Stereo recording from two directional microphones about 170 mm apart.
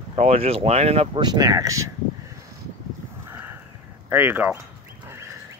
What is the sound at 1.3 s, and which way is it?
Speech, 25° right (ahead or behind).